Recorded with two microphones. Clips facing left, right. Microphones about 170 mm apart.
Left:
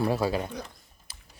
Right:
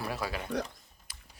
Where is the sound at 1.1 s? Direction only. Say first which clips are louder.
Left 2 dB; 30° left (ahead or behind).